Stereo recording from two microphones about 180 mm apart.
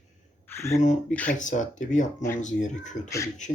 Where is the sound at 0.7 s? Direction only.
45° left (ahead or behind).